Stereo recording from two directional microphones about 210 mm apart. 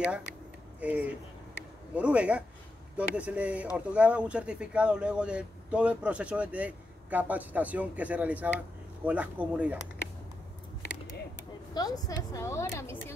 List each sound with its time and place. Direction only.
0.7 s speech: 5° right (ahead or behind)
11.7 s a woman's voice: 20° left (ahead or behind)